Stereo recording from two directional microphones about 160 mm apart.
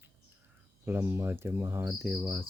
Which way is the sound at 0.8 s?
15° right (ahead or behind).